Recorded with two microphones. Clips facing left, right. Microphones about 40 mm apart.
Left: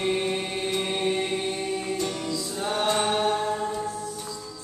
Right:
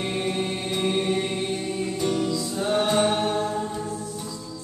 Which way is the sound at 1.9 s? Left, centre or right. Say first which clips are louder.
Right 4 dB; centre.